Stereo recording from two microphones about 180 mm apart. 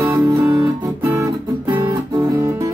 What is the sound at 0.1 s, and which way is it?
Music, 15° right (ahead or behind).